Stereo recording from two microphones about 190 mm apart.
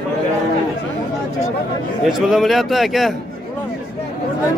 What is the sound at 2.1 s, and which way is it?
A man's voice, centre (ahead or behind).